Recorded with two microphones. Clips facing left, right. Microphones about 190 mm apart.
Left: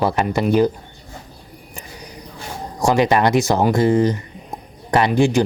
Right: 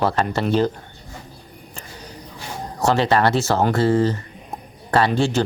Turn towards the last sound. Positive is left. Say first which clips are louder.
# left 3 dB
turn(degrees=15)  # may be behind; listen again after turning